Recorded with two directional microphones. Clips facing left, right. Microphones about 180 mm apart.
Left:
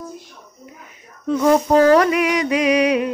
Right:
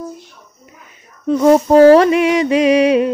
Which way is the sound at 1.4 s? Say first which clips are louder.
Right 6 dB; 30° right (ahead or behind).